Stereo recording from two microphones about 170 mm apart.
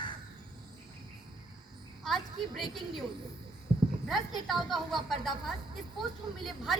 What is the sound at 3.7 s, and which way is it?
Clip-clop, 30° right (ahead or behind).